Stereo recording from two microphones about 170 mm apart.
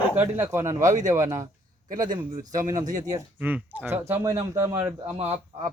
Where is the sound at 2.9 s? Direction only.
50° right (ahead or behind).